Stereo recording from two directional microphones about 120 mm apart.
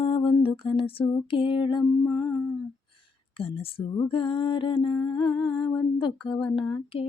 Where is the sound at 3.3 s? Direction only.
50° left (ahead or behind).